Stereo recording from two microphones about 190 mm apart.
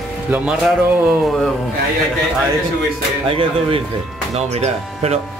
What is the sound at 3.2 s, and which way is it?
Speech, 30° right (ahead or behind).